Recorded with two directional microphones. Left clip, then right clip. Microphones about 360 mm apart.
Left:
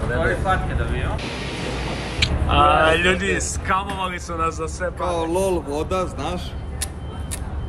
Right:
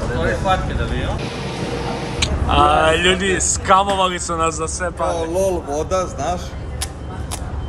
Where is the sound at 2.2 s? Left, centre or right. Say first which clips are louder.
Right 2 dB; centre.